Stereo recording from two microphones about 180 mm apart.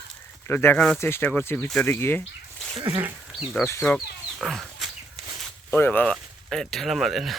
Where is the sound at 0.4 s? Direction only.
10° left (ahead or behind).